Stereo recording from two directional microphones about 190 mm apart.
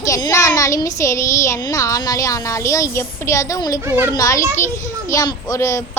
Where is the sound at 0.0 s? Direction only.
15° left (ahead or behind).